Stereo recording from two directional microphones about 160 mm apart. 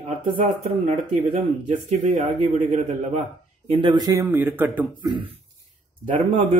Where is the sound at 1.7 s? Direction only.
45° right (ahead or behind).